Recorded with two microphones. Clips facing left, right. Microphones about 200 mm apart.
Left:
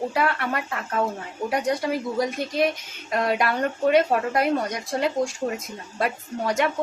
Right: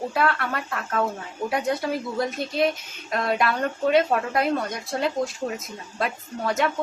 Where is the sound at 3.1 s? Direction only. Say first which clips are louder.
Left 1 dB; 10° left (ahead or behind).